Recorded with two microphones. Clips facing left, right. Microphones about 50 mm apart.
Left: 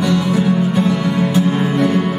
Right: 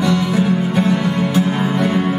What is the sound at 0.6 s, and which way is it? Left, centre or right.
Music, right.